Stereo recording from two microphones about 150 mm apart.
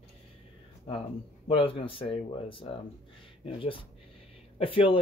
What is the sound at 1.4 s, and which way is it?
Speech, 40° left (ahead or behind).